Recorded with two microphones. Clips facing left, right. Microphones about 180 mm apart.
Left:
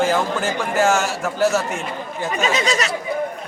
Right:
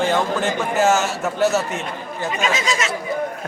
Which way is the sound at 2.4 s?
40° left (ahead or behind).